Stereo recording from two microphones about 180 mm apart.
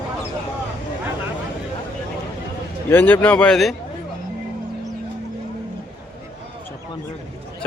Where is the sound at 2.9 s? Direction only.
10° left (ahead or behind).